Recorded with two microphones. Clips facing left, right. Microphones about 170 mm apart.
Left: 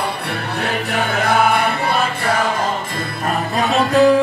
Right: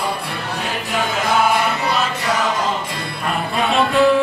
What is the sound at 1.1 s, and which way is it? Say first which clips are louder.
Music: left 1 dB; 60° left (ahead or behind).